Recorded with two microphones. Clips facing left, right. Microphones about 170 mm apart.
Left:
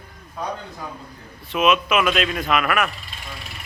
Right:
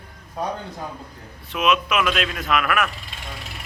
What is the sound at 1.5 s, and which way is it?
A man's voice, centre (ahead or behind).